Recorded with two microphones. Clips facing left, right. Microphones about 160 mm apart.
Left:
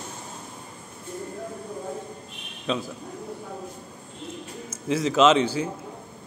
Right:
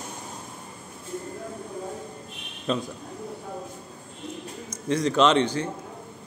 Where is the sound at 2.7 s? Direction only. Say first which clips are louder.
Right 1 dB; centre (ahead or behind).